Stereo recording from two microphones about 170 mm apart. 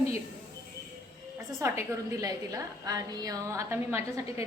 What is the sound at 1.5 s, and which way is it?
A woman's voice, 15° right (ahead or behind).